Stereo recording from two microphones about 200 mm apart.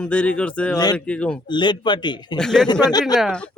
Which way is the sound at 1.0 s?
5° left (ahead or behind).